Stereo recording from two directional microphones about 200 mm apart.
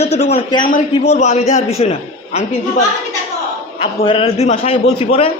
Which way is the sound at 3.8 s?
25° left (ahead or behind).